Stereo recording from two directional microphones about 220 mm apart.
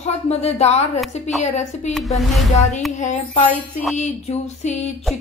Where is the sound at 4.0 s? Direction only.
30° left (ahead or behind).